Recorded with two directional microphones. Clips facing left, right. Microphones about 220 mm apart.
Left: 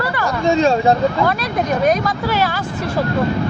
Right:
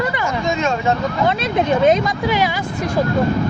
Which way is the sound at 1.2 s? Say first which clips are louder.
Right 1 dB; 20° right (ahead or behind).